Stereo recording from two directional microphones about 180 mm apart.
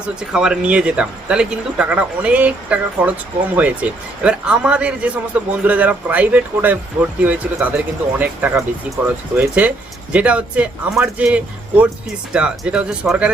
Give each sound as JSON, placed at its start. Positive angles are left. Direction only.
{"t": 0.0, "sound": "speech", "side_deg": -5}